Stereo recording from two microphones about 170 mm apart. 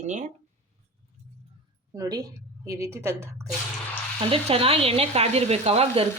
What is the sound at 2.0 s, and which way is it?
A woman's voice, 20° right (ahead or behind).